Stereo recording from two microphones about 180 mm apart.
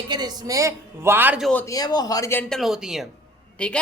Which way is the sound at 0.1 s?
20° right (ahead or behind).